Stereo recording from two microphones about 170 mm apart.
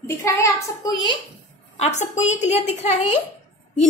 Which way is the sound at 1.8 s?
45° left (ahead or behind).